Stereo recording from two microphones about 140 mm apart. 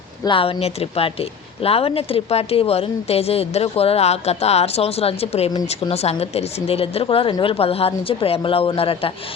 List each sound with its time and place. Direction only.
0.3 s speech: 40° left (ahead or behind)